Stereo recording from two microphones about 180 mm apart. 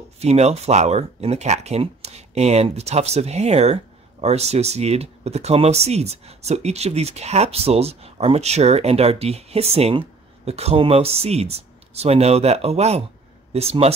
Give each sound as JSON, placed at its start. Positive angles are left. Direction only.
{"t": 0.2, "sound": "speech", "side_deg": -35}